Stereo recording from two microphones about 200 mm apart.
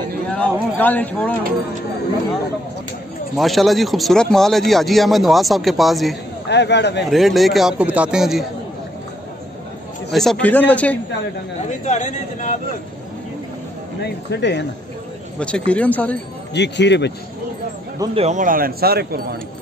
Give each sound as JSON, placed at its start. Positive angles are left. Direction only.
{"t": 0.3, "sound": "speech", "side_deg": 5}
{"t": 3.3, "sound": "speech", "side_deg": 0}
{"t": 6.5, "sound": "speech", "side_deg": 60}
{"t": 7.1, "sound": "speech", "side_deg": 0}
{"t": 10.1, "sound": "speech", "side_deg": 5}
{"t": 11.6, "sound": "speech", "side_deg": 35}
{"t": 14.0, "sound": "speech", "side_deg": 60}
{"t": 15.3, "sound": "speech", "side_deg": 5}
{"t": 16.5, "sound": "speech", "side_deg": 60}
{"t": 18.1, "sound": "speech", "side_deg": -35}